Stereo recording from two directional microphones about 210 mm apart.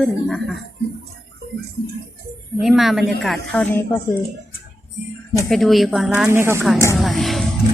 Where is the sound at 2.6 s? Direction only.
Centre (ahead or behind).